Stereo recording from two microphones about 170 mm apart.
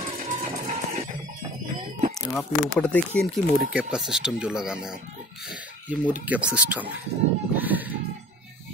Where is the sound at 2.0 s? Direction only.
45° right (ahead or behind).